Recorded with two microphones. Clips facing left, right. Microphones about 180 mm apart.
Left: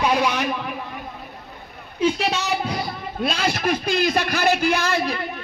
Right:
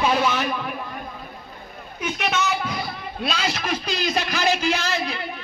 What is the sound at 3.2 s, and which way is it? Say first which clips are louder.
Speech: left 4 dB; 55° left (ahead or behind).